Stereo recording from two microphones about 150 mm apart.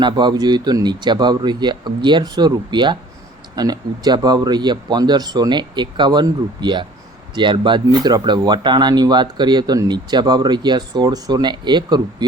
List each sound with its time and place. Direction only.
0.0 s speech: 30° right (ahead or behind)